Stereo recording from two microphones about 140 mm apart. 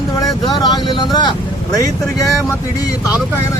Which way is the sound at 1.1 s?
30° left (ahead or behind).